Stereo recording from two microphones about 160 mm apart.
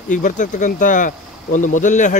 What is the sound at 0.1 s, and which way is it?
Speech, 55° left (ahead or behind).